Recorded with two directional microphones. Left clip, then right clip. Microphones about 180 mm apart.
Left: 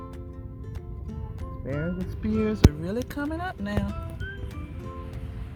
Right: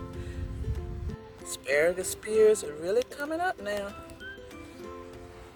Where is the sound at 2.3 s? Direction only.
20° right (ahead or behind).